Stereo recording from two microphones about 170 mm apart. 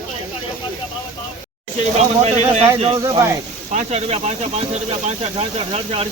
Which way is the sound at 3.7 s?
40° right (ahead or behind).